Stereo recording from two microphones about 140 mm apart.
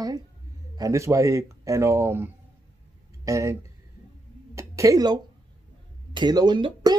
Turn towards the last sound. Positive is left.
turn(degrees=-35)  # may be behind; listen again after turning